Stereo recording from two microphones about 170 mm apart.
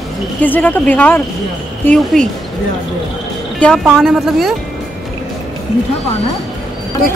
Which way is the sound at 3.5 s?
5° left (ahead or behind).